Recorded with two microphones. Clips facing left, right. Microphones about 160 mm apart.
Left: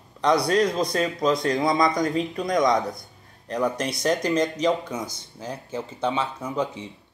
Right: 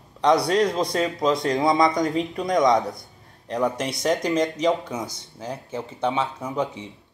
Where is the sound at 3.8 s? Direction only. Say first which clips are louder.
Right 1 dB; 20° right (ahead or behind).